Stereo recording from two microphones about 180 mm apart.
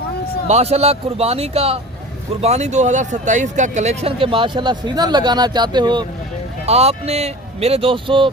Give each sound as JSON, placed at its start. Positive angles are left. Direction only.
{"t": 0.4, "sound": "speech", "side_deg": -35}
{"t": 6.7, "sound": "speech", "side_deg": -35}